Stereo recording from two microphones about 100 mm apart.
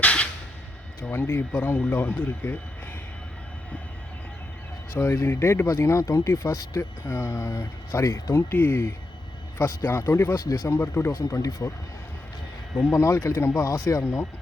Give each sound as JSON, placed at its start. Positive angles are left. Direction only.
{"t": 0.0, "sound": "a sound", "side_deg": 10}
{"t": 1.0, "sound": "speech", "side_deg": 20}
{"t": 4.9, "sound": "speech", "side_deg": 25}
{"t": 10.4, "sound": "speech", "side_deg": 40}
{"t": 10.7, "sound": "speech", "side_deg": 25}
{"t": 12.9, "sound": "speech", "side_deg": 30}